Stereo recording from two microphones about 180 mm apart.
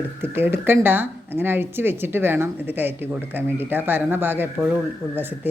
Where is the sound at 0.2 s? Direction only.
10° right (ahead or behind).